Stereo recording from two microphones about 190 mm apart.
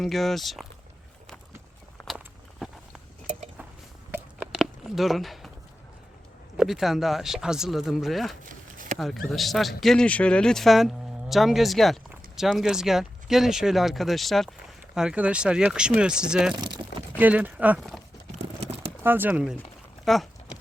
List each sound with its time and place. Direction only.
0.0 s speech: centre (ahead or behind)
2.1 s walk: centre (ahead or behind)
4.1 s a sound: 5° right (ahead or behind)
6.6 s speech: centre (ahead or behind)
8.4 s a sound: 45° right (ahead or behind)
9.0 s speech: centre (ahead or behind)
16.6 s speech: 25° right (ahead or behind)
17.2 s speech: 10° right (ahead or behind)
18.6 s a sound: 35° right (ahead or behind)
19.0 s speech: 10° right (ahead or behind)